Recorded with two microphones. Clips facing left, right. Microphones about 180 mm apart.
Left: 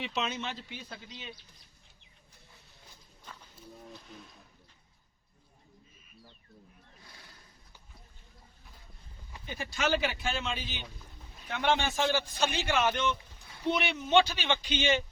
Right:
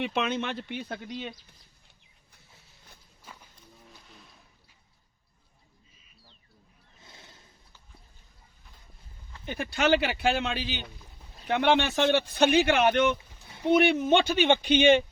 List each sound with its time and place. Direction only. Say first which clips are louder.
0.0 s a man's voice: right 6 dB; 55° right (ahead or behind)
3.3 s walk: right 1 dB; 10° right (ahead or behind)
4.0 s a sound: left 5 dB; centre (ahead or behind)
7.0 s a sound: right 4 dB; 25° right (ahead or behind)
9.5 s a man's voice: right 6 dB; 65° right (ahead or behind)
13.7 s speech: right 9 dB; 50° right (ahead or behind)